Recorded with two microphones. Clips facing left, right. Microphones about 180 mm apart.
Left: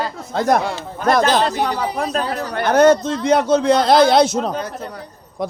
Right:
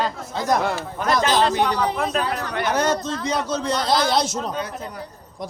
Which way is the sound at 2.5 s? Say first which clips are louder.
Left 10 dB; 55° left (ahead or behind).